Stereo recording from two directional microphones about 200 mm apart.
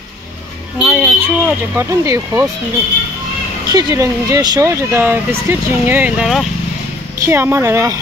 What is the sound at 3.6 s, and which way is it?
Speech, 20° right (ahead or behind).